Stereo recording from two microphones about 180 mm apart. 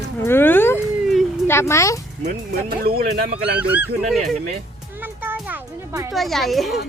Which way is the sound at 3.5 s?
10° right (ahead or behind).